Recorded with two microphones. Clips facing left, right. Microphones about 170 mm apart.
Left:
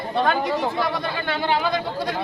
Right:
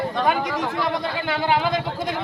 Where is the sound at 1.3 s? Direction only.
20° right (ahead or behind).